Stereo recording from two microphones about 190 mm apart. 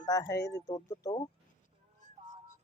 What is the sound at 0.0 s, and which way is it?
Speech, 20° left (ahead or behind).